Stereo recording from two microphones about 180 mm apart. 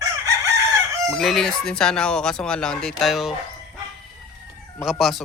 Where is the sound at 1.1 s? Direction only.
Centre (ahead or behind).